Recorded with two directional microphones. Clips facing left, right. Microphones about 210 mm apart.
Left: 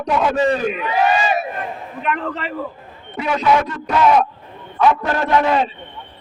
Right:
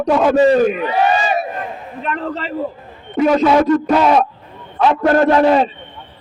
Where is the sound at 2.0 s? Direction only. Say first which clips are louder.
Right 1 dB; 35° right (ahead or behind).